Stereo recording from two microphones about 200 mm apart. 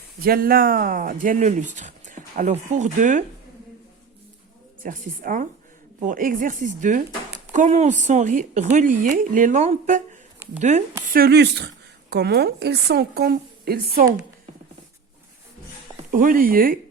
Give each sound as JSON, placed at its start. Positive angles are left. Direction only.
{"t": 0.2, "sound": "speech", "side_deg": -45}
{"t": 4.8, "sound": "a woman's voice", "side_deg": -45}
{"t": 11.1, "sound": "a woman's voice", "side_deg": -50}
{"t": 16.1, "sound": "a woman's voice", "side_deg": -45}